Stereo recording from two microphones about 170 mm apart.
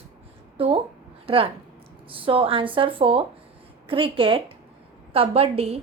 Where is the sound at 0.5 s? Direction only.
35° right (ahead or behind).